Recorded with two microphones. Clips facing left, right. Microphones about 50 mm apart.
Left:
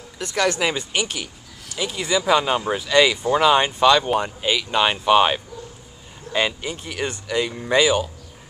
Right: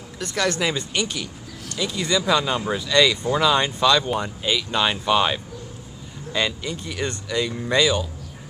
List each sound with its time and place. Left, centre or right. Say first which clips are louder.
0.2 s speech: left 2 dB; left